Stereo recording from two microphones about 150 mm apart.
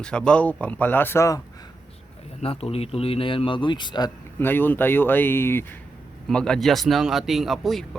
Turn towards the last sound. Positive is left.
turn(degrees=0)  # may be behind; listen again after turning